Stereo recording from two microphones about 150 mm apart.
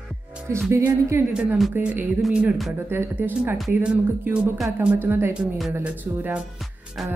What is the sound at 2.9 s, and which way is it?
A woman's voice, 15° right (ahead or behind).